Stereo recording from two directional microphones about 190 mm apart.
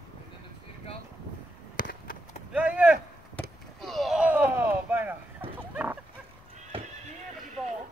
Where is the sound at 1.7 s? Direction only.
45° left (ahead or behind).